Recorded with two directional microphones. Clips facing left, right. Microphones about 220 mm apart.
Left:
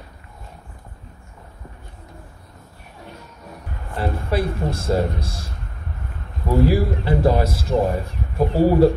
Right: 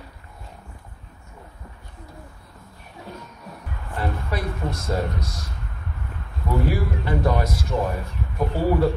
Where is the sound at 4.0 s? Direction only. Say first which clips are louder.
Left 5 dB; 30° left (ahead or behind).